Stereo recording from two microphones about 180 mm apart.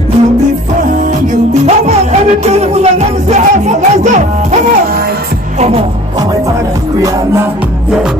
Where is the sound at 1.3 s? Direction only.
40° right (ahead or behind).